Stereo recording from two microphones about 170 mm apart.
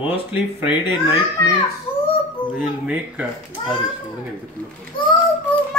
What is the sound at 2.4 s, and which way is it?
Speech, 30° left (ahead or behind).